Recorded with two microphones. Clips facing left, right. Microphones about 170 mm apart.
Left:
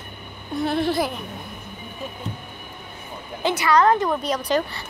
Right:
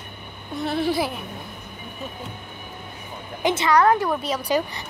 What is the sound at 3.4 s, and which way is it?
Speech, 25° right (ahead or behind).